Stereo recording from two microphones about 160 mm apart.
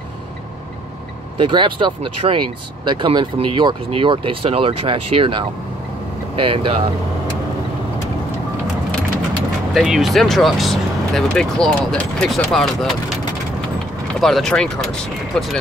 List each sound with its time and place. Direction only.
1.4 s speech: 30° right (ahead or behind)
9.8 s speech: centre (ahead or behind)
14.2 s speech: centre (ahead or behind)